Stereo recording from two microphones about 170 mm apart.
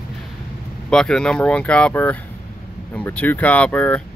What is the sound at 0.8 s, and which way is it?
Speech, 5° left (ahead or behind).